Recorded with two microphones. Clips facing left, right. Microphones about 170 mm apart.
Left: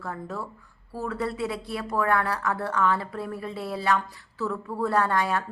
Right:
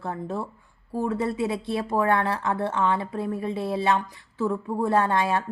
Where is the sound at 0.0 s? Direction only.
25° right (ahead or behind).